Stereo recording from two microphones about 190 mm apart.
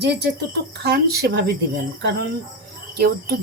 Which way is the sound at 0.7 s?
60° right (ahead or behind).